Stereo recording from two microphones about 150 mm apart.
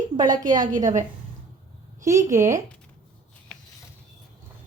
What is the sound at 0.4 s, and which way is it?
Speech, 60° right (ahead or behind).